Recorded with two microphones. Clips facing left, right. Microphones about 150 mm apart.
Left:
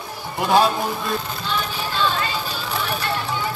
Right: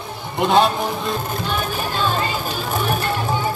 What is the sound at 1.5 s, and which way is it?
Music, 45° right (ahead or behind).